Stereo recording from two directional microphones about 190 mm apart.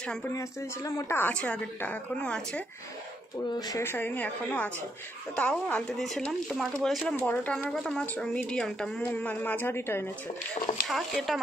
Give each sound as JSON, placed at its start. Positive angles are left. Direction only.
{"t": 0.0, "sound": "speech", "side_deg": 5}
{"t": 0.3, "sound": "a woman's voice", "side_deg": 15}
{"t": 3.5, "sound": "a woman's voice", "side_deg": 20}
{"t": 10.9, "sound": "speech", "side_deg": 0}